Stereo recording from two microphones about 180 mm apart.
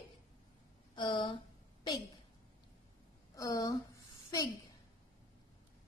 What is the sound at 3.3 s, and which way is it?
Speech, 20° left (ahead or behind).